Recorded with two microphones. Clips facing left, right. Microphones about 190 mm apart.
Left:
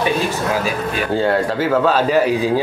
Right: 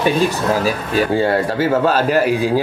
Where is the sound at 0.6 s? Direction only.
35° right (ahead or behind).